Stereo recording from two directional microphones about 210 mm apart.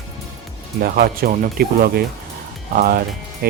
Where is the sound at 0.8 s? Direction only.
45° right (ahead or behind).